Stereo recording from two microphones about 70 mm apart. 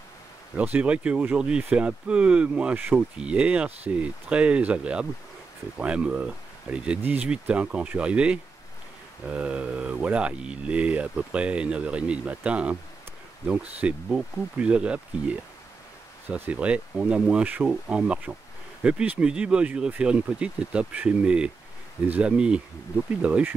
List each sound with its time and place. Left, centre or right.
0.6 s speech: centre